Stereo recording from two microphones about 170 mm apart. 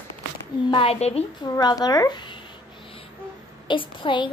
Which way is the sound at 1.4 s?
25° left (ahead or behind).